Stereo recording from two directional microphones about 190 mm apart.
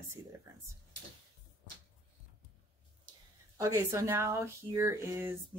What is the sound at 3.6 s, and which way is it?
Speech, 15° right (ahead or behind).